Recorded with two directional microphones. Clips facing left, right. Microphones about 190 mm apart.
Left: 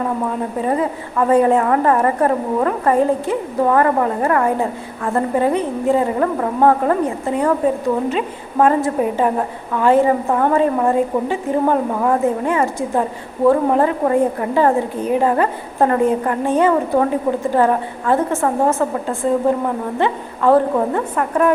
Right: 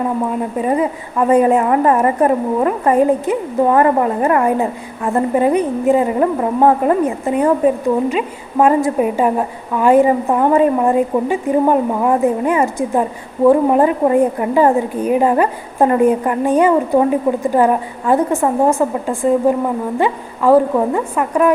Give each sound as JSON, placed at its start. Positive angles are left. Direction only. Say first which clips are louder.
{"t": 0.6, "sound": "a woman's voice", "louder": "right 2 dB", "side_deg": -15}